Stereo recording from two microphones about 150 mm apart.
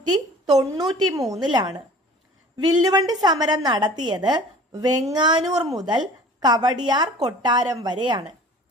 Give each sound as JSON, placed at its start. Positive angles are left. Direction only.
{"t": 0.1, "sound": "a woman's voice", "side_deg": -25}